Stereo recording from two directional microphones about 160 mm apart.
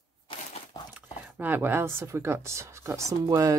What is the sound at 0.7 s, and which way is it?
Dog, 25° left (ahead or behind).